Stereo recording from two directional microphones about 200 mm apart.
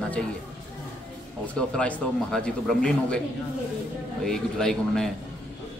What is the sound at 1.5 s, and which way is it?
A man's voice, 5° left (ahead or behind).